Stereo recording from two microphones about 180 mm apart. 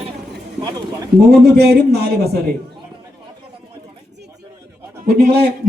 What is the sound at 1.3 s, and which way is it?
A man's voice, 65° right (ahead or behind).